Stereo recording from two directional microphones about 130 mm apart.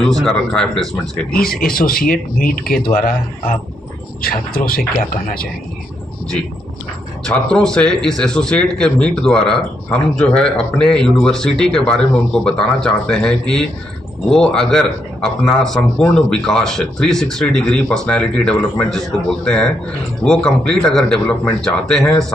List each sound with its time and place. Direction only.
0.0 s a man's voice: 5° left (ahead or behind)
1.6 s speech: 90° left
7.2 s a man's voice: 5° left (ahead or behind)